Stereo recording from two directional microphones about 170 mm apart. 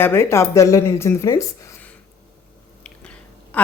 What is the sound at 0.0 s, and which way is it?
Speech, 15° left (ahead or behind).